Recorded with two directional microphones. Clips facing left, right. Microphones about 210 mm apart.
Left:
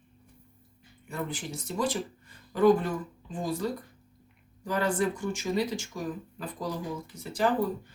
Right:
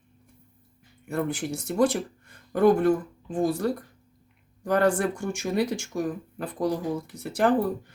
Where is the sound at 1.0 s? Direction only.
65° right (ahead or behind).